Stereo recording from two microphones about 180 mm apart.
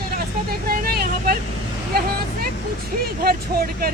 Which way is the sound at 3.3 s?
55° right (ahead or behind).